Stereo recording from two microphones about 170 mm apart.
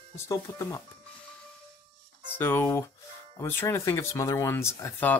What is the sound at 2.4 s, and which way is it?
Speech, 10° left (ahead or behind).